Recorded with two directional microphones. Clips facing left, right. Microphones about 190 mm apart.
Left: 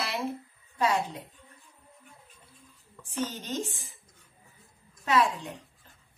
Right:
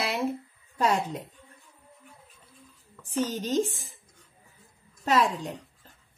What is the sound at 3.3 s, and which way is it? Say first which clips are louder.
Speech: right 8 dB; 40° right (ahead or behind).